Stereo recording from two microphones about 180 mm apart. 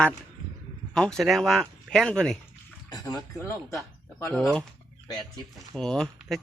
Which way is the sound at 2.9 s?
20° left (ahead or behind).